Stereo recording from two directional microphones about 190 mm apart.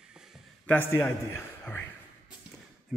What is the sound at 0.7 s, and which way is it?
A man's voice, 10° left (ahead or behind).